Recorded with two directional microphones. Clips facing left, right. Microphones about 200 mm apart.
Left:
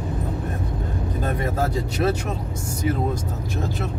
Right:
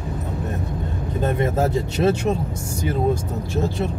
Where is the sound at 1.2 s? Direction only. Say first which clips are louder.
Right 5 dB; 25° right (ahead or behind).